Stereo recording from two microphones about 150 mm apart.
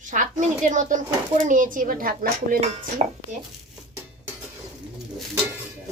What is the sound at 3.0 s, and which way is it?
Speech, 45° right (ahead or behind).